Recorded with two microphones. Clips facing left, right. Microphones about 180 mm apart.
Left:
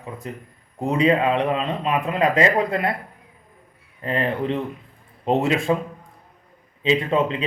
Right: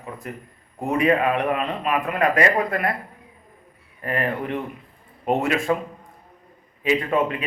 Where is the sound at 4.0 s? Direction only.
25° left (ahead or behind).